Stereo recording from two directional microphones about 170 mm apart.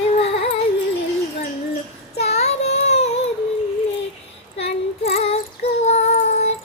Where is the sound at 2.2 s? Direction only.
40° left (ahead or behind).